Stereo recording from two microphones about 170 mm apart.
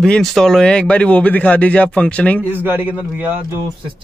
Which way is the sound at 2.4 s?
10° right (ahead or behind).